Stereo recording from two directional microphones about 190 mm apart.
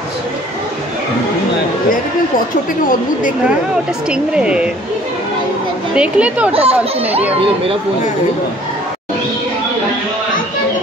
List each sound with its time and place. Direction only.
4.1 s speech: 5° right (ahead or behind)
5.9 s a woman's voice: 5° right (ahead or behind)
6.5 s speech: 30° right (ahead or behind)